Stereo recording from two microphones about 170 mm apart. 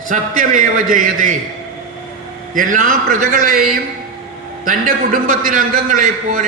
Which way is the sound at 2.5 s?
50° right (ahead or behind).